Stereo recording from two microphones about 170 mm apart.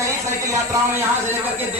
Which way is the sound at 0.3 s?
20° right (ahead or behind).